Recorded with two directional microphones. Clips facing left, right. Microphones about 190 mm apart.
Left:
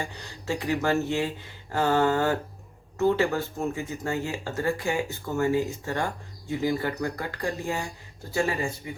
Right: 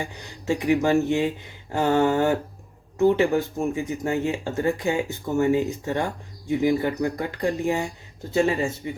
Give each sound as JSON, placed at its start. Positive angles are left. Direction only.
{"t": 0.0, "sound": "speech", "side_deg": -15}